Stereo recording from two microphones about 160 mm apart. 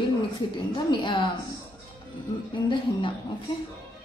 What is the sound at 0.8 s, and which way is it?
Speech, 30° left (ahead or behind).